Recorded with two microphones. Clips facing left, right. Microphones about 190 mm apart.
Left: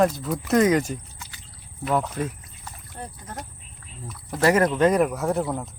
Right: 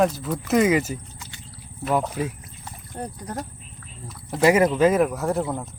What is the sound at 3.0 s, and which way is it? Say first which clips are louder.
Speech: right 6 dB; 35° right (ahead or behind).